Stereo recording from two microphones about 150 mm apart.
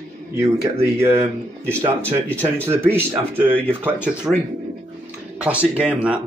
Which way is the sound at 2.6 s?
15° right (ahead or behind).